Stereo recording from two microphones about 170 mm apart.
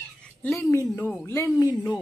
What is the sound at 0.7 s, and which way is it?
Speech, 20° left (ahead or behind).